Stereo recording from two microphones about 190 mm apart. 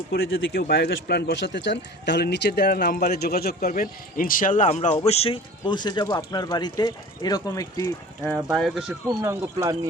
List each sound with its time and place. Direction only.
0.1 s speech: 55° left (ahead or behind); by 7.9 s 20° left (ahead or behind)
8.5 s speech: centre (ahead or behind)
9.0 s speech: 20° right (ahead or behind)